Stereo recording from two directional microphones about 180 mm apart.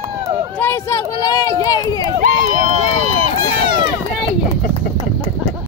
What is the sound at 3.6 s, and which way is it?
Run, 25° right (ahead or behind).